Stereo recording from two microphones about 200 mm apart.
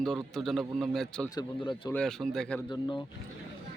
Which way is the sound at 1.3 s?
20° left (ahead or behind).